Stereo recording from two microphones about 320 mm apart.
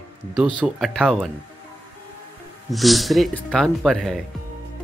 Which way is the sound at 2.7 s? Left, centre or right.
Centre.